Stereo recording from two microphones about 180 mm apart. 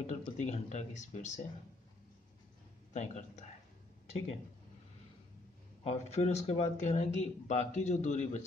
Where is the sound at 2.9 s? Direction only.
40° left (ahead or behind).